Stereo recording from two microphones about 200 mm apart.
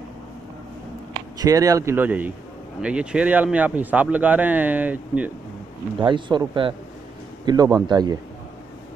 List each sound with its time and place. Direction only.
1.4 s speech: 15° right (ahead or behind)
5.9 s speech: 25° right (ahead or behind)